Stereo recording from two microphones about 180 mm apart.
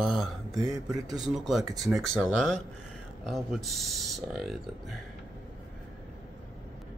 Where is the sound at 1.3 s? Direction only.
Centre (ahead or behind).